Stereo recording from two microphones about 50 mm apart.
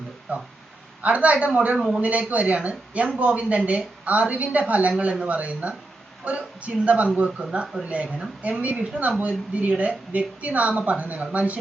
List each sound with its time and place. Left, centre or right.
0.3 s speech: right
7.3 s speech: centre
7.9 s speech: right